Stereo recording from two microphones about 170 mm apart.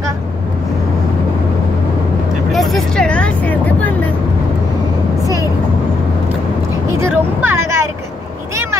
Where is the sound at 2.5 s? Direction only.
Centre (ahead or behind).